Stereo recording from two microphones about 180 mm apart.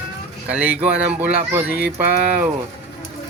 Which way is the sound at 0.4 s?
10° right (ahead or behind).